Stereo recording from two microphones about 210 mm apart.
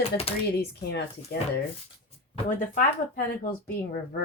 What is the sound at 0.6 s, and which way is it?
Speech, 50° left (ahead or behind).